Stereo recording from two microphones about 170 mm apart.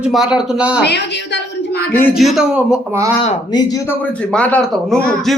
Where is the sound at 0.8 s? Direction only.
80° left.